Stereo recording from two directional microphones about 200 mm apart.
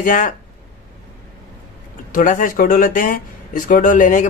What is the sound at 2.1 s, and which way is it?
Speech, 40° left (ahead or behind).